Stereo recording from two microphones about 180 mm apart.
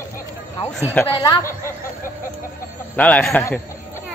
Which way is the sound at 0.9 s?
10° left (ahead or behind).